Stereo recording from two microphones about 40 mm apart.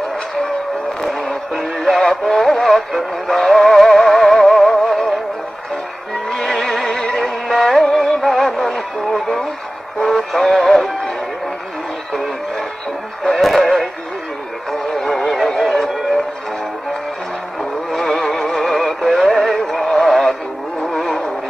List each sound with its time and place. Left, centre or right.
1.0 s music: centre
2.6 s synthetic singing: centre
4.6 s music: centre
6.3 s vehicle: centre
6.9 s music: centre
7.2 s music: centre
10.0 s synthetic singing: centre
12.1 s music: centre
13.4 s synthetic singing: centre
14.7 s a sound: centre
17.9 s synthetic singing: centre
20.8 s vehicle: centre